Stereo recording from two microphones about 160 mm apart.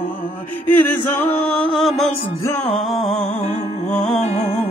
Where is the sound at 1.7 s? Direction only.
Centre (ahead or behind).